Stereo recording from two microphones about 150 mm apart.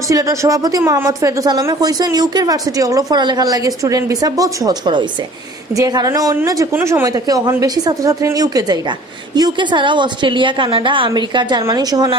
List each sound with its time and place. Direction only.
0.1 s a woman's voice: 20° right (ahead or behind)